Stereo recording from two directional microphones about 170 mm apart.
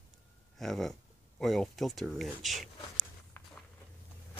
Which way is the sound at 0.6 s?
Centre (ahead or behind).